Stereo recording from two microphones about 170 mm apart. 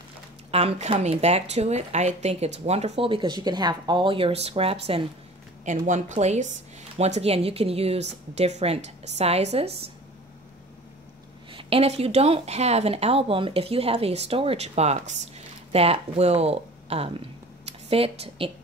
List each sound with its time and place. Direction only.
0.5 s speech: 35° right (ahead or behind)
5.7 s speech: 45° right (ahead or behind)
11.5 s speech: 35° right (ahead or behind)